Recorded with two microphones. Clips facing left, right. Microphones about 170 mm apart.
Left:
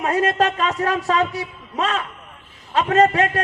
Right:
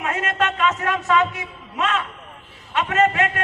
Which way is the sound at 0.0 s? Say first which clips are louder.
Left 5 dB; 35° left (ahead or behind).